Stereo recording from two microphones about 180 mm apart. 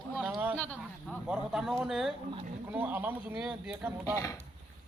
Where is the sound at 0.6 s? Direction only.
10° left (ahead or behind).